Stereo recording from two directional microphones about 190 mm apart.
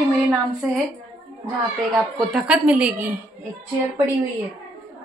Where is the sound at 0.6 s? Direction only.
Centre (ahead or behind).